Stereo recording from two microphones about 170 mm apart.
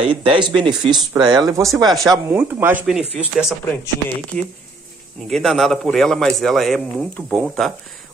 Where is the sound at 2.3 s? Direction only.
10° right (ahead or behind).